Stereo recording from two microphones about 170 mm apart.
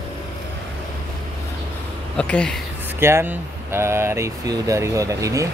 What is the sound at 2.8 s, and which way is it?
Speech, 15° right (ahead or behind).